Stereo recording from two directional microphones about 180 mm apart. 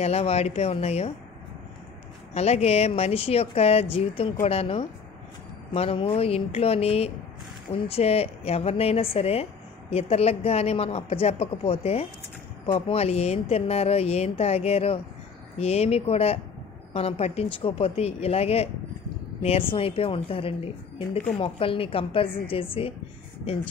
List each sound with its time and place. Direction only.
0.0 s a woman's voice: 35° left (ahead or behind)
2.3 s a woman's voice: 35° left (ahead or behind)